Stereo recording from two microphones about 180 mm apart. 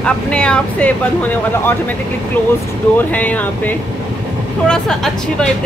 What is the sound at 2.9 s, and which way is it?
Speech, 10° left (ahead or behind).